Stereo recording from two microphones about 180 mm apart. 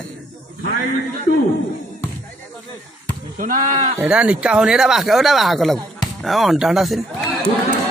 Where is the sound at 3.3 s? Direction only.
45° right (ahead or behind).